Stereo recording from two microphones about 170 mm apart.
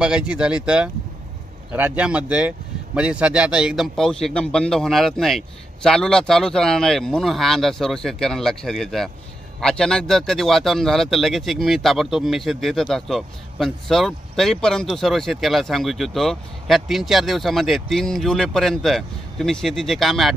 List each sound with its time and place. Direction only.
0.0 s speech: 5° right (ahead or behind)